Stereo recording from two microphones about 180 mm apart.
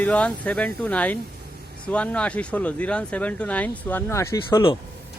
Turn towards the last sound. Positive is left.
turn(degrees=15)  # may be behind; listen again after turning